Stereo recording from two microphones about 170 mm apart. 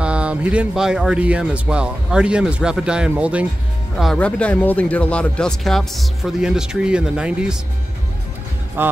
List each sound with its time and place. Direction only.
0.0 s speech: 5° right (ahead or behind)
8.8 s speech: 10° right (ahead or behind)